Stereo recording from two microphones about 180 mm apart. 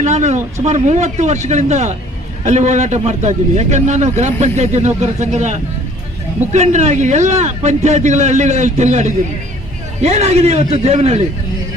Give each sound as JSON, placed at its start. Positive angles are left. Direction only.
{"t": 0.0, "sound": "a man's voice", "side_deg": -40}